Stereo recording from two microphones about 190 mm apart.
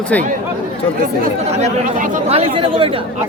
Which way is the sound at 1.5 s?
40° right (ahead or behind).